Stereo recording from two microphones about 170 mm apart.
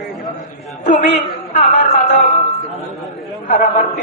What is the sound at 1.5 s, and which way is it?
Music, 40° left (ahead or behind).